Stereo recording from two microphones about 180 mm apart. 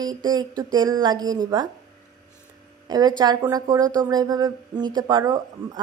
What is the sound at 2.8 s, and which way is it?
A woman's voice, 20° right (ahead or behind).